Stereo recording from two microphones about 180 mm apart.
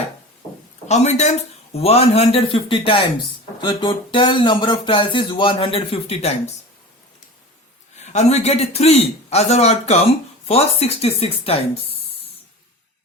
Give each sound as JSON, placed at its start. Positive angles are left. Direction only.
{"t": 0.9, "sound": "a man's voice", "side_deg": 40}
{"t": 7.9, "sound": "a man's voice", "side_deg": 40}